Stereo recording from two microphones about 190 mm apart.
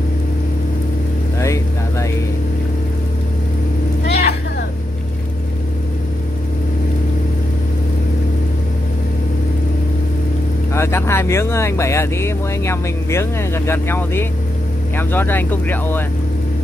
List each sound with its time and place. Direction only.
1.4 s vehicle: 15° left (ahead or behind)
4.1 s a sound: 60° left (ahead or behind)
10.7 s speech: 15° left (ahead or behind)